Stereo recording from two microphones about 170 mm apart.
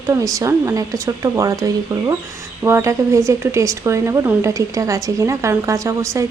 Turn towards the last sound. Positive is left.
turn(degrees=-20)  # may be behind; listen again after turning